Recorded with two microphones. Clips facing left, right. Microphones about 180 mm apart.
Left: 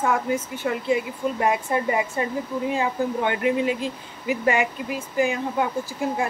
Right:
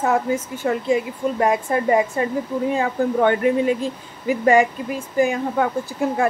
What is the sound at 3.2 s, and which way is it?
Speech, 45° right (ahead or behind).